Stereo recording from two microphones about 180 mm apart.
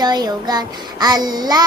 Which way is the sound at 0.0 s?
20° right (ahead or behind).